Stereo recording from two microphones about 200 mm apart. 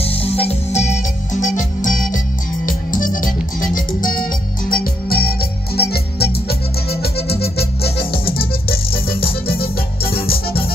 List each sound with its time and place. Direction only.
0.0 s music: 30° left (ahead or behind); by 7.9 s 50° left (ahead or behind)
9.1 s music: 50° left (ahead or behind)